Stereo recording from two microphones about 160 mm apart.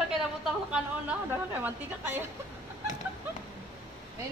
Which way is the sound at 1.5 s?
15° right (ahead or behind).